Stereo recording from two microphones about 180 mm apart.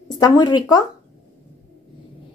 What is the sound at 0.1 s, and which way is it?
Speech, 20° left (ahead or behind).